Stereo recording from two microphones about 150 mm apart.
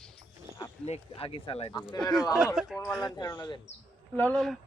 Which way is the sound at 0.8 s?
40° left (ahead or behind).